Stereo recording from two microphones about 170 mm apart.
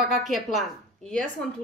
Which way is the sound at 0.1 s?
Centre (ahead or behind).